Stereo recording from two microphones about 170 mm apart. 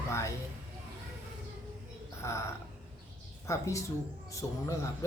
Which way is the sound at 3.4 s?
20° left (ahead or behind).